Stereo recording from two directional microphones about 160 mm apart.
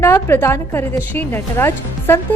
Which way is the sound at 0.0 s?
15° left (ahead or behind).